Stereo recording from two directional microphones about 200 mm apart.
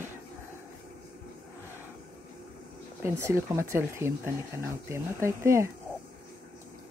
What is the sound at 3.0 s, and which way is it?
Speech, 15° right (ahead or behind).